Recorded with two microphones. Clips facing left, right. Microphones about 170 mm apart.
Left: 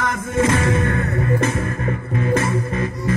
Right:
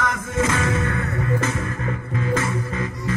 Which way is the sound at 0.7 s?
55° left (ahead or behind).